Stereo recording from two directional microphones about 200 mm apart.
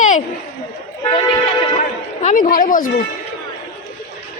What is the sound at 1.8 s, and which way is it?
A man's voice, 40° left (ahead or behind).